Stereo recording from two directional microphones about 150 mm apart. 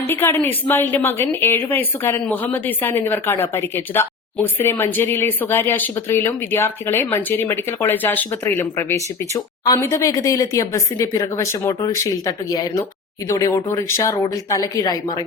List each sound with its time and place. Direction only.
0.1 s a woman's voice: 15° left (ahead or behind)